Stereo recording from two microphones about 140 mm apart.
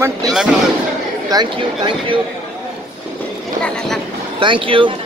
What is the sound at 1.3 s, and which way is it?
Speech, 35° right (ahead or behind).